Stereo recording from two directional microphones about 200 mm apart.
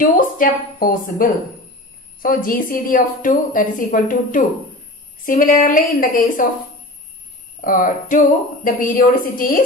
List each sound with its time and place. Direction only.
0.0 s a woman's voice: 45° left (ahead or behind)
7.6 s a woman's voice: 45° left (ahead or behind)